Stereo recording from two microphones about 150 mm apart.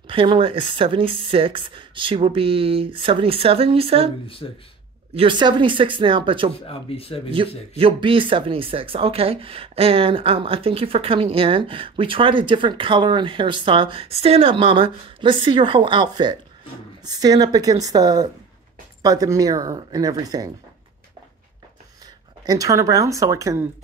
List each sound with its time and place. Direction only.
0.0 s speech: 35° right (ahead or behind)
4.4 s speech: 30° left (ahead or behind)
5.1 s speech: 35° right (ahead or behind)
6.7 s speech: 40° left (ahead or behind)
7.4 s speech: 35° right (ahead or behind)
22.4 s speech: 25° right (ahead or behind)